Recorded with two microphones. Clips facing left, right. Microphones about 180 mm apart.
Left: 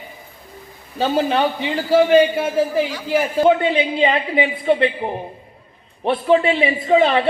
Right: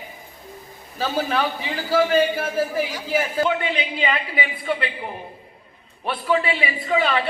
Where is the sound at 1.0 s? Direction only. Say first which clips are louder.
Left 5 dB; 30° left (ahead or behind).